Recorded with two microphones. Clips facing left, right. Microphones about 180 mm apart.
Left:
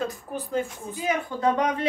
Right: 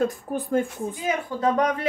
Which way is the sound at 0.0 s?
50° right (ahead or behind).